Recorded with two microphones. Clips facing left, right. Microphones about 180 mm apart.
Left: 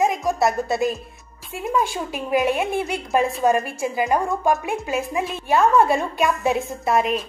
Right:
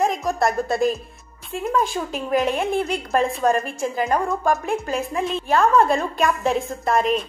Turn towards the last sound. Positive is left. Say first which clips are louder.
# even
turn(degrees=5)  # may be behind; listen again after turning